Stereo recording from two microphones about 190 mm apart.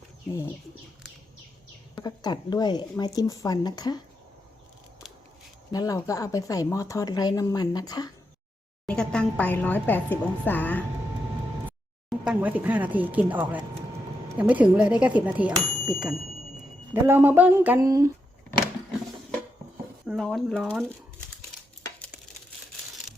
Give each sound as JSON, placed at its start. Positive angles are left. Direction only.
{"t": 2.0, "sound": "speech", "side_deg": 20}
{"t": 5.7, "sound": "speech", "side_deg": 20}
{"t": 8.9, "sound": "a woman's voice", "side_deg": 5}
{"t": 12.2, "sound": "speech", "side_deg": -5}
{"t": 20.1, "sound": "speech", "side_deg": 0}